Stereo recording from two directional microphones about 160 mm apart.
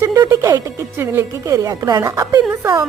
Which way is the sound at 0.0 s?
20° right (ahead or behind).